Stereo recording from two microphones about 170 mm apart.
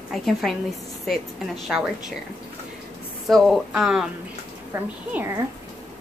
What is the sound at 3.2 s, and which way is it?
Speech, centre (ahead or behind).